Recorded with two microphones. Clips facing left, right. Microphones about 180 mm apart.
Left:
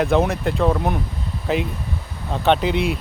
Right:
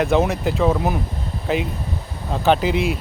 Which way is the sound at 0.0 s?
Centre (ahead or behind).